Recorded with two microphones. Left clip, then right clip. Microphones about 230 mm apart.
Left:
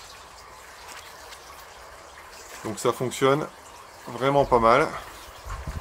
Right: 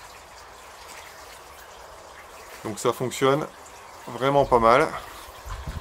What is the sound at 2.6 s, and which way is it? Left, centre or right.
Speech, centre.